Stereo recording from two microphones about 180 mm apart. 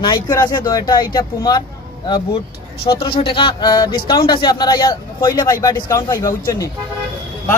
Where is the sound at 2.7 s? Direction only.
60° left (ahead or behind).